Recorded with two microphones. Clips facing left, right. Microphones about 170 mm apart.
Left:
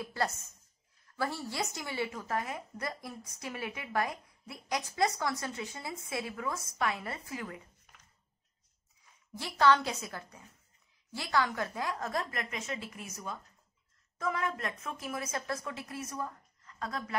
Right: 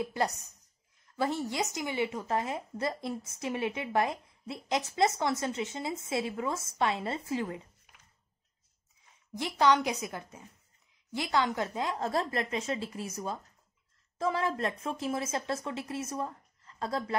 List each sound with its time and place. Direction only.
0.0 s a woman's voice: 20° right (ahead or behind)
9.3 s a woman's voice: 20° right (ahead or behind)